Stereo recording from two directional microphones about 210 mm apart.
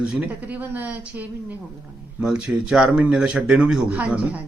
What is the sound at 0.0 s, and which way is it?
A woman's voice, 5° right (ahead or behind).